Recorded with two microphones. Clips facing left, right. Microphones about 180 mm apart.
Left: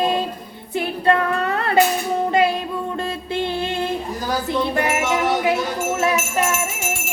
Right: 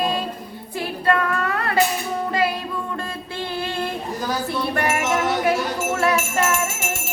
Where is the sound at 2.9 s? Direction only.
25° left (ahead or behind).